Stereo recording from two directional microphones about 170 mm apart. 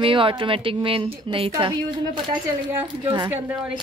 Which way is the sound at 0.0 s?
30° right (ahead or behind).